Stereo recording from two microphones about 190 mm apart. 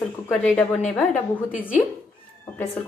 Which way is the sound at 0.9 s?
10° left (ahead or behind).